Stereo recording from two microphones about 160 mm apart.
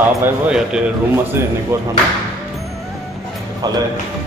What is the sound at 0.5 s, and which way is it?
A man's voice, 5° right (ahead or behind).